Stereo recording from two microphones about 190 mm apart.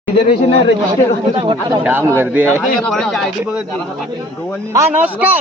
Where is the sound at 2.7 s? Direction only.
5° left (ahead or behind).